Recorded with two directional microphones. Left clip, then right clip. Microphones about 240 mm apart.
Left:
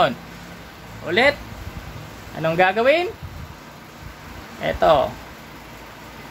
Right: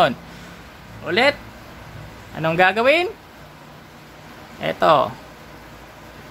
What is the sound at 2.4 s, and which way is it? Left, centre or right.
Speech, centre.